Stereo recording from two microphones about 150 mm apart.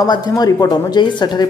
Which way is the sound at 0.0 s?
25° left (ahead or behind).